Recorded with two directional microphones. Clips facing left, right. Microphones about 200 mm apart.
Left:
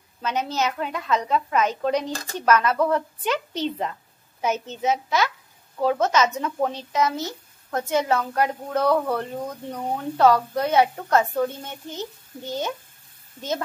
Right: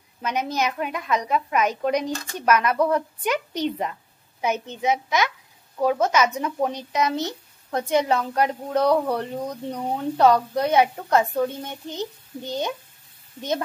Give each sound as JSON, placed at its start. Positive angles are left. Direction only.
{"t": 0.2, "sound": "speech", "side_deg": -10}